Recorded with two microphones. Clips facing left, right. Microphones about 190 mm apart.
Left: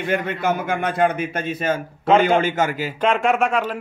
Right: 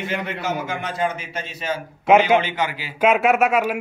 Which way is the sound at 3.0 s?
5° right (ahead or behind).